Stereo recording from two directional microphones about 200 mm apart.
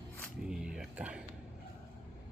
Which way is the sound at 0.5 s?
5° right (ahead or behind).